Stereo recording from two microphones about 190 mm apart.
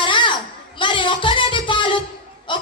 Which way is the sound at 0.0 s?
25° left (ahead or behind).